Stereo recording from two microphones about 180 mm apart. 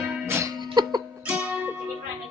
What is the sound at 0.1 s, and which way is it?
Music, 15° right (ahead or behind).